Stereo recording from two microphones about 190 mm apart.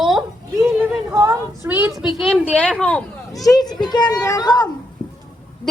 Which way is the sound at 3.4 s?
20° left (ahead or behind).